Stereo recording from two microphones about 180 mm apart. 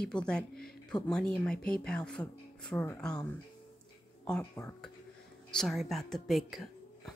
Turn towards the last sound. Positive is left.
turn(degrees=0)  # may be behind; listen again after turning